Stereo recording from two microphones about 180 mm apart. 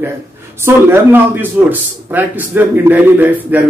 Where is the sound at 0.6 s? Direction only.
15° right (ahead or behind).